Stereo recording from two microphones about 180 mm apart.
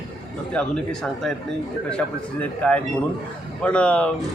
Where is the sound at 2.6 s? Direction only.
5° left (ahead or behind).